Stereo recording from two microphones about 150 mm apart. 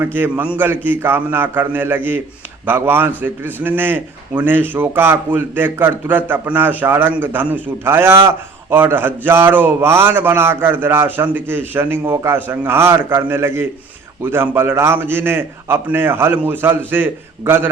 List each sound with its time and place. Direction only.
0.0 s a man's voice: 15° right (ahead or behind)